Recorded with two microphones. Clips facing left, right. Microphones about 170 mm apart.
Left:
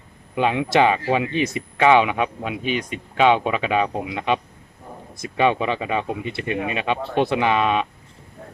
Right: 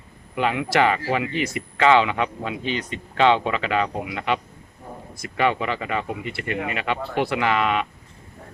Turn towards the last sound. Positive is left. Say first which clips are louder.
# left 2 dB
turn(degrees=20)  # may be behind; listen again after turning